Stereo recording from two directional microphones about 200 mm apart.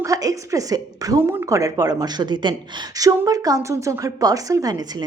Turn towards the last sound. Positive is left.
turn(degrees=-20)  # may be behind; listen again after turning